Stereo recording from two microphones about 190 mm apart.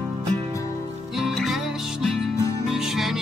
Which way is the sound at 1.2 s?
Centre (ahead or behind).